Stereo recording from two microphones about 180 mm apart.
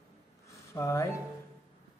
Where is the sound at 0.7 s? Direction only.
15° left (ahead or behind).